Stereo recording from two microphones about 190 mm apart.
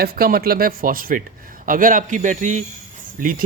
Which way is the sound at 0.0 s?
50° right (ahead or behind).